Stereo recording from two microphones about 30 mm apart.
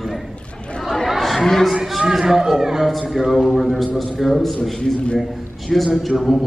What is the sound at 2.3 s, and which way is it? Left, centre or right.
Speech, centre.